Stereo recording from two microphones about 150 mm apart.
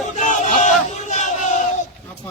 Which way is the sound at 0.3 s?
55° left (ahead or behind).